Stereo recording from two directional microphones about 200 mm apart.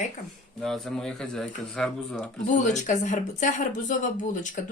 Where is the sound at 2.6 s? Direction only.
40° left (ahead or behind).